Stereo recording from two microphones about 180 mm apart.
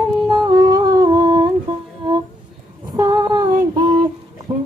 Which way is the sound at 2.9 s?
20° right (ahead or behind).